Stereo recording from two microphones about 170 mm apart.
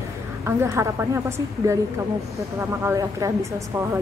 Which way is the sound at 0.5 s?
15° right (ahead or behind).